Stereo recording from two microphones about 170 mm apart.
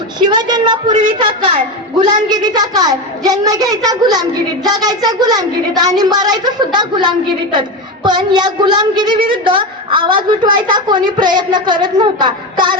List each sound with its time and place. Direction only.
0.2 s a woman's voice: 25° right (ahead or behind)